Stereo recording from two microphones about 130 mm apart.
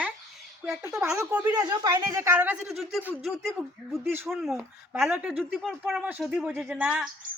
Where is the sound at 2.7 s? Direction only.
Centre (ahead or behind).